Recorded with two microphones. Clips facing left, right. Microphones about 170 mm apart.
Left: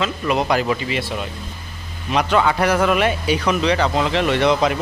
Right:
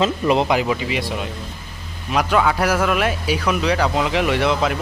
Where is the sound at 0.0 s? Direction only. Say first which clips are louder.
Right 3 dB; 30° right (ahead or behind).